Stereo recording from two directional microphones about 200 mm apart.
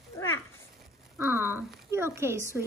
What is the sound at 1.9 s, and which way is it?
Speech, 15° right (ahead or behind).